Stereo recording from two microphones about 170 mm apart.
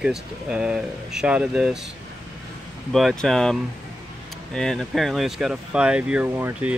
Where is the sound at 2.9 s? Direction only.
Centre (ahead or behind).